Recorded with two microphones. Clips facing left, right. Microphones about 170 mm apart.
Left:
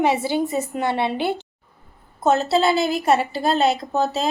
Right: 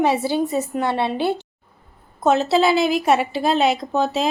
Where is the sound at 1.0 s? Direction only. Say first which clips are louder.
Right 2 dB; 55° left (ahead or behind).